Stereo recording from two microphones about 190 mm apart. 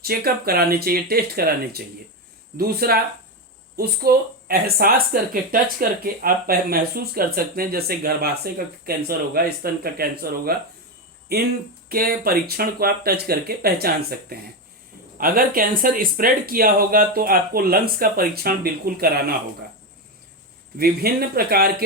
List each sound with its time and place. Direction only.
0.0 s speech: 55° right (ahead or behind)
11.9 s speech: 50° right (ahead or behind)
20.7 s speech: 55° right (ahead or behind)